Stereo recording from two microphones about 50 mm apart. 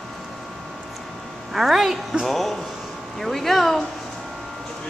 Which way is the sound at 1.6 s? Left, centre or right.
Centre.